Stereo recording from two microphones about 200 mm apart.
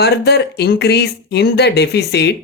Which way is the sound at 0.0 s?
55° left (ahead or behind).